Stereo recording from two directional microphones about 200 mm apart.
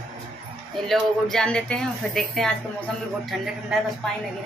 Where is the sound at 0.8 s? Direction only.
Centre (ahead or behind).